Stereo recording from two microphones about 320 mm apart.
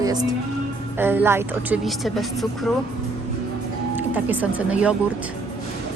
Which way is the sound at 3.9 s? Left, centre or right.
Centre.